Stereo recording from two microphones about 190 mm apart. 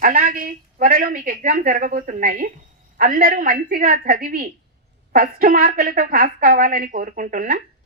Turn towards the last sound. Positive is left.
turn(degrees=-45)  # may be behind; listen again after turning